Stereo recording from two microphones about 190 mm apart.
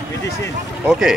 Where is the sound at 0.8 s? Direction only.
5° right (ahead or behind).